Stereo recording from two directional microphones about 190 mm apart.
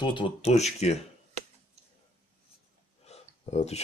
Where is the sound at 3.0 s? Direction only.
35° left (ahead or behind).